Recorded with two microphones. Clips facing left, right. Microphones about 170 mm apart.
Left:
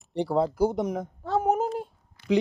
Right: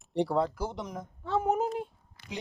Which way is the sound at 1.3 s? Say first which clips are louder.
Left 3 dB; 40° left (ahead or behind).